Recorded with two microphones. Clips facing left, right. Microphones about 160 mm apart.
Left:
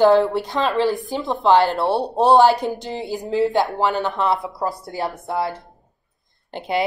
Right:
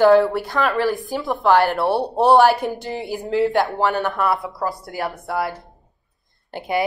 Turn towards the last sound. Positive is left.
turn(degrees=20)  # may be behind; listen again after turning